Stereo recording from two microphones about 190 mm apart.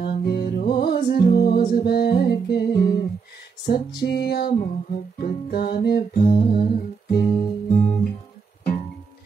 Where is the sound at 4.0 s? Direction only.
60° left (ahead or behind).